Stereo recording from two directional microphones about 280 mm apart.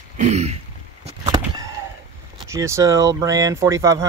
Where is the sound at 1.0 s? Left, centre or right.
Centre.